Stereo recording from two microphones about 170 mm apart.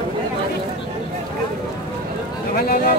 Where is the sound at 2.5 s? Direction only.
65° left (ahead or behind).